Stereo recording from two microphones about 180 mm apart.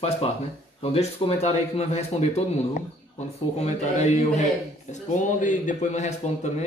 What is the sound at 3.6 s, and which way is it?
Speech, 40° left (ahead or behind).